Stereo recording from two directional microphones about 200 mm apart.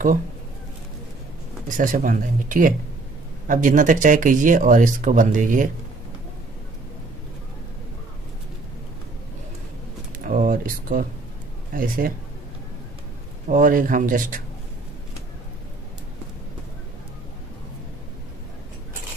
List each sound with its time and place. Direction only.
1.7 s speech: 40° right (ahead or behind)
10.1 s a sound: 40° right (ahead or behind)
11.7 s speech: 45° right (ahead or behind)
13.5 s speech: 45° right (ahead or behind)